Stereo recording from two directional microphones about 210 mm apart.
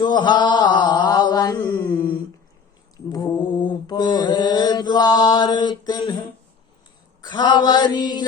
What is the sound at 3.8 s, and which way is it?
Chant, 20° left (ahead or behind).